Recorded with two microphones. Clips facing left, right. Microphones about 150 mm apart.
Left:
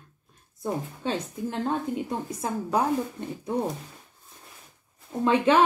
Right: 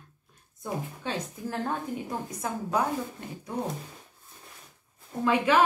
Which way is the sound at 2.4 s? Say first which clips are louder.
Left 2 dB; 25° left (ahead or behind).